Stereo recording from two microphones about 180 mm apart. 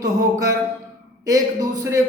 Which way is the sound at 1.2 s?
20° right (ahead or behind).